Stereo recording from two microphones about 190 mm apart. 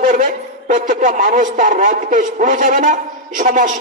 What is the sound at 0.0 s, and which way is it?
A man's voice, 45° right (ahead or behind).